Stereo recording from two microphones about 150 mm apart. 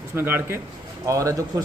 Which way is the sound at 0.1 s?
15° right (ahead or behind).